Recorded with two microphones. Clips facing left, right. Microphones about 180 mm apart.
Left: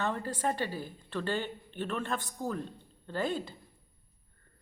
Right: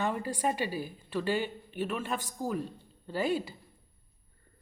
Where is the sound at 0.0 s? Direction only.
15° right (ahead or behind).